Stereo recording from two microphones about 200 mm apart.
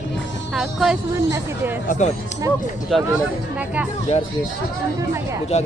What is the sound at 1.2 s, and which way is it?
Speech, 15° right (ahead or behind).